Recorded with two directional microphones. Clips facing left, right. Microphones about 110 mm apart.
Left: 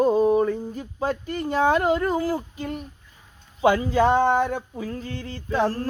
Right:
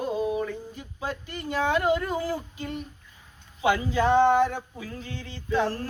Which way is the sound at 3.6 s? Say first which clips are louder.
Left 5 dB; 40° left (ahead or behind).